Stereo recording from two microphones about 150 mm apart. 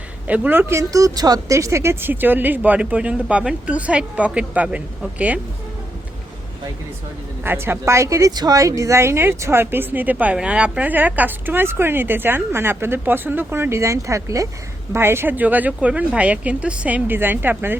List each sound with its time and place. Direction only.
0.3 s speech: 10° right (ahead or behind)
7.4 s speech: 15° right (ahead or behind)